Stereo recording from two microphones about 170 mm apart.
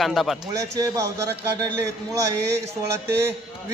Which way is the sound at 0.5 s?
20° right (ahead or behind).